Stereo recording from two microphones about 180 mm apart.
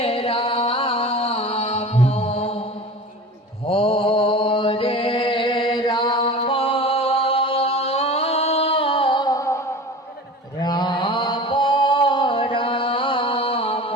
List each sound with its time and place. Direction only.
0.0 s music: 30° left (ahead or behind)
3.7 s mantra: 30° left (ahead or behind)
10.6 s mantra: 25° left (ahead or behind)